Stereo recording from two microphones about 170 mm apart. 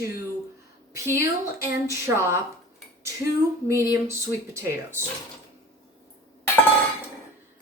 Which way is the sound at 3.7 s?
15° right (ahead or behind).